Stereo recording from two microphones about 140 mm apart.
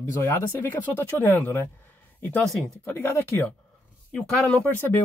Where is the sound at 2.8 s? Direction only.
20° left (ahead or behind).